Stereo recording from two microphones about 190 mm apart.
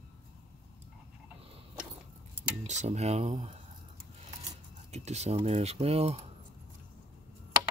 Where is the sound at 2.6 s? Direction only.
35° right (ahead or behind).